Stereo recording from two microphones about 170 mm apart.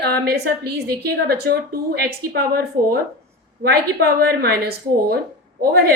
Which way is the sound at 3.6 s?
65° right (ahead or behind).